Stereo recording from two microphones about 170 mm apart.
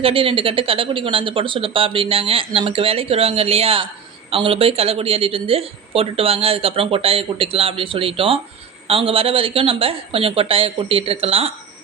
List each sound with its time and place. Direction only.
0.0 s speech: 35° right (ahead or behind)